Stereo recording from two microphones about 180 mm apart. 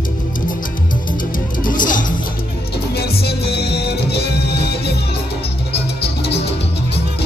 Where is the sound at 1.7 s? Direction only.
50° left (ahead or behind).